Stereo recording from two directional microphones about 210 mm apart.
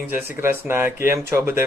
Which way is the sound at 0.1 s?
10° right (ahead or behind).